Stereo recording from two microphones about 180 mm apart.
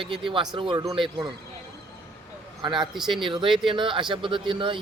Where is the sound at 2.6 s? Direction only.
25° right (ahead or behind).